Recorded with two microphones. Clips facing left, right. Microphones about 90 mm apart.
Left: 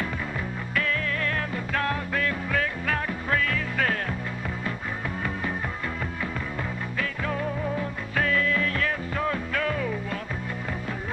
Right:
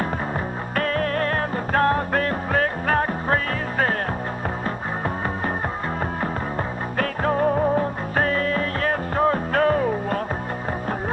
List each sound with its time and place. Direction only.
0.7 s music: 45° right (ahead or behind)
7.0 s music: 45° right (ahead or behind)